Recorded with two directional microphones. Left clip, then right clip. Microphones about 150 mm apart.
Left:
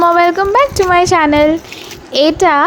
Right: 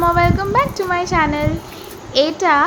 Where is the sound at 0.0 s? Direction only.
65° left (ahead or behind).